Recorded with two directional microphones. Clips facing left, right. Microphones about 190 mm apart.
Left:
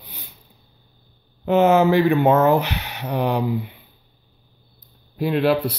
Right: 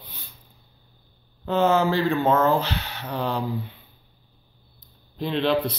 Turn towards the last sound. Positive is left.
turn(degrees=10)  # may be behind; listen again after turning